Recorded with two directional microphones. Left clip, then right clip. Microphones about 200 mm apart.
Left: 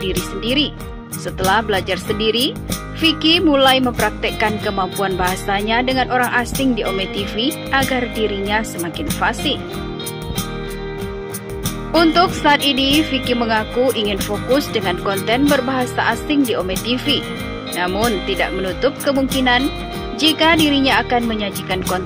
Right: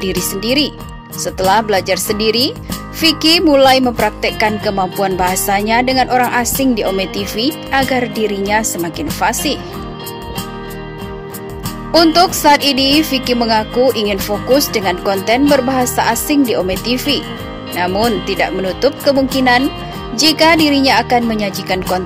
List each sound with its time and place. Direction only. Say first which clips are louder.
0.0 s speech: right 3 dB; 20° right (ahead or behind)
11.9 s speech: right 4 dB; 20° right (ahead or behind)